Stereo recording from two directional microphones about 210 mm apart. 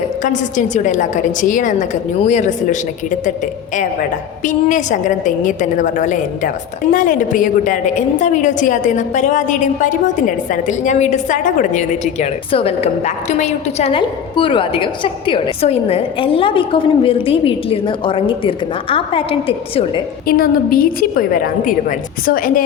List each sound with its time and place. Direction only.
0.2 s a woman's voice: 35° left (ahead or behind)
4.4 s a woman's voice: 35° left (ahead or behind)
20.2 s a woman's voice: 45° left (ahead or behind)